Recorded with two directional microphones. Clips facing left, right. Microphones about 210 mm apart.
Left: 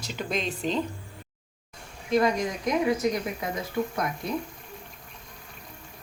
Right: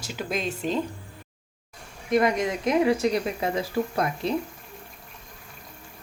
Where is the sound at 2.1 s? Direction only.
20° right (ahead or behind).